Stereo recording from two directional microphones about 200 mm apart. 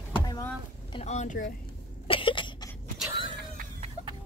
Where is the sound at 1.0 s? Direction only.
35° left (ahead or behind).